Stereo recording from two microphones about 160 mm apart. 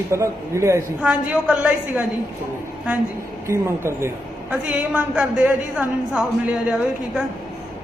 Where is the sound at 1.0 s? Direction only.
5° right (ahead or behind).